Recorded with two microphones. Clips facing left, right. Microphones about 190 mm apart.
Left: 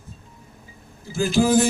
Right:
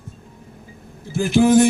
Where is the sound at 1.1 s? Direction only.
55° right (ahead or behind).